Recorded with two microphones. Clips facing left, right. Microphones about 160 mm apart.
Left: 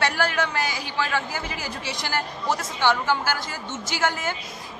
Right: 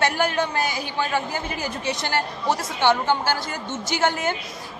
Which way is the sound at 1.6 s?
55° right (ahead or behind).